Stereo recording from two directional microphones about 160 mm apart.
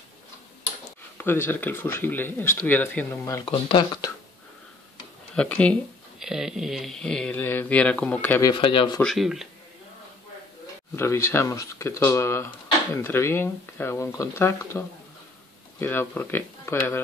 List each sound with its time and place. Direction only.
1.1 s speech: 15° left (ahead or behind)
3.4 s speech: 35° left (ahead or behind)
5.3 s speech: 5° left (ahead or behind)
8.4 s speech: 25° left (ahead or behind)
9.0 s speech: centre (ahead or behind)
11.0 s speech: 15° left (ahead or behind)